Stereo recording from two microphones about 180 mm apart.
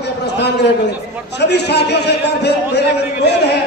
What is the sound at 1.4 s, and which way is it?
A man's voice, 70° left (ahead or behind).